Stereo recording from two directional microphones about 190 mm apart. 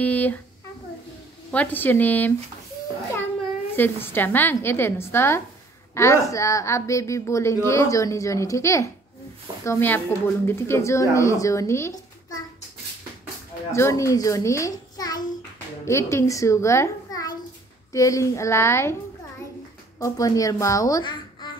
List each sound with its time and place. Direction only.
0.0 s a woman's voice: 10° left (ahead or behind)
1.5 s a woman's voice: 10° left (ahead or behind)
3.7 s a woman's voice: 10° left (ahead or behind)
13.7 s a woman's voice: 15° left (ahead or behind)
20.0 s a woman's voice: 20° left (ahead or behind)